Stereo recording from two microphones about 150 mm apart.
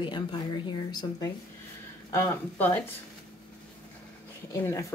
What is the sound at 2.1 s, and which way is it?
Speech, 15° left (ahead or behind).